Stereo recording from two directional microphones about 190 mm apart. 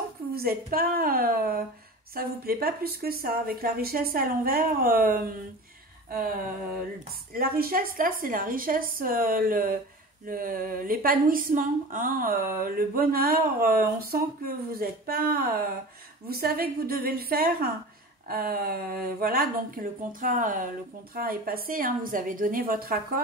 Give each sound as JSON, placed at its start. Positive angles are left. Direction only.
{"t": 0.3, "sound": "a woman's voice", "side_deg": -55}
{"t": 6.0, "sound": "a sound", "side_deg": -50}
{"t": 7.3, "sound": "a woman's voice", "side_deg": -50}